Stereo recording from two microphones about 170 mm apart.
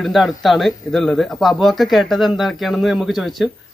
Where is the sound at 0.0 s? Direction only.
Centre (ahead or behind).